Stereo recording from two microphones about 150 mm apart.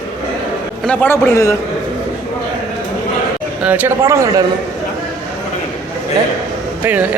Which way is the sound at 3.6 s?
10° right (ahead or behind).